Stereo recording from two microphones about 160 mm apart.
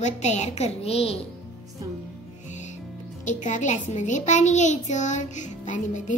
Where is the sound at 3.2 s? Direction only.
50° left (ahead or behind).